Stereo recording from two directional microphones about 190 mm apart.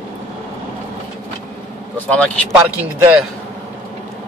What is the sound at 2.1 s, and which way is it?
Speech, 5° left (ahead or behind).